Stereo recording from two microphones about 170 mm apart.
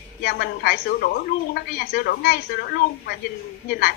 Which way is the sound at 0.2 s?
65° left (ahead or behind).